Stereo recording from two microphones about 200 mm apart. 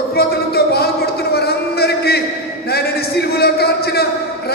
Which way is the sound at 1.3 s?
55° left (ahead or behind).